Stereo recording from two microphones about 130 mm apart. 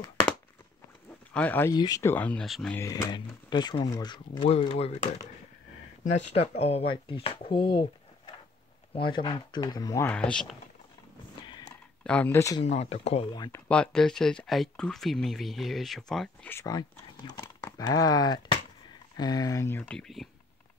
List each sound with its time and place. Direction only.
1.3 s speech: 10° left (ahead or behind)
1.7 s speech: 30° left (ahead or behind); by 2.4 s 10° left (ahead or behind)
2.4 s speech: centre (ahead or behind)
2.8 s speech: 20° left (ahead or behind)
3.1 s speech: 35° left (ahead or behind)
4.5 s speech: 50° left (ahead or behind)
6.3 s speech: 50° left (ahead or behind)
8.9 s speech: 40° left (ahead or behind)
12.0 s speech: 10° left (ahead or behind)
12.6 s speech: 55° left (ahead or behind)
13.7 s speech: 5° left (ahead or behind)
16.4 s speech: 20° left (ahead or behind)
19.8 s speech: 5° left (ahead or behind)